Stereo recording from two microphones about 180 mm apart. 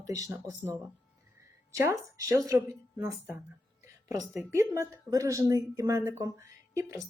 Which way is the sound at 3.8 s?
15° right (ahead or behind).